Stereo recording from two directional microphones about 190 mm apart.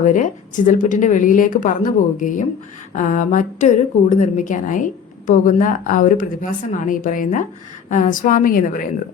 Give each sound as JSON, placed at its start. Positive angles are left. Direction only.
{"t": 0.0, "sound": "a woman's voice", "side_deg": 40}